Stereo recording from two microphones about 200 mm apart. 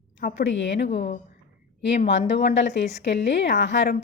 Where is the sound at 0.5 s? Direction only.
70° left (ahead or behind).